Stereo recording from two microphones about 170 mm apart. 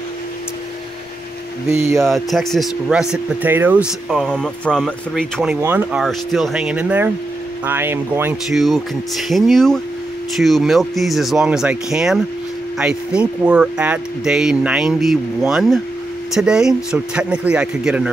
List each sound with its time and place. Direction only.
1.7 s speech: 15° right (ahead or behind)
2.0 s speech: centre (ahead or behind)
8.5 s speech: centre (ahead or behind)